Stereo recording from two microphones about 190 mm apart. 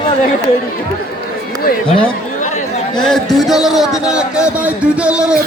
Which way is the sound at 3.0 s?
Centre (ahead or behind).